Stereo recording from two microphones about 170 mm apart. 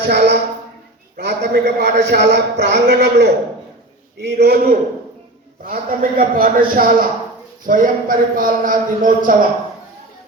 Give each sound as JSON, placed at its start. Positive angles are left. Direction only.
{"t": 0.0, "sound": "a man's voice", "side_deg": -75}
{"t": 1.1, "sound": "a man's voice", "side_deg": -85}